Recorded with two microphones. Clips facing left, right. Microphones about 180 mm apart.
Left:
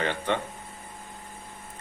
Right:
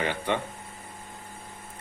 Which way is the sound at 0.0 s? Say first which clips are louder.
Even; 10° right (ahead or behind).